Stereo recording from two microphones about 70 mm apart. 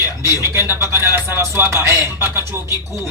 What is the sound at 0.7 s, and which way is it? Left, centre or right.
A man's voice, right.